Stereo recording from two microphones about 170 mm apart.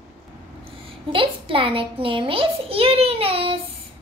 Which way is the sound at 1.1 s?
30° right (ahead or behind).